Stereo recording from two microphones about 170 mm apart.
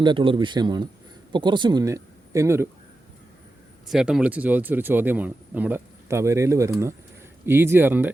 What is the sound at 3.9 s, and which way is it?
Speech, centre (ahead or behind).